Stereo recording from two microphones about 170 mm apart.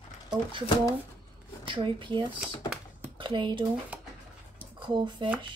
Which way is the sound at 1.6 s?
30° right (ahead or behind).